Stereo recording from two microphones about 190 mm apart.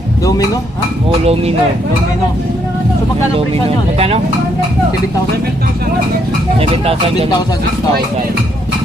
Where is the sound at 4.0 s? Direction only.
35° right (ahead or behind).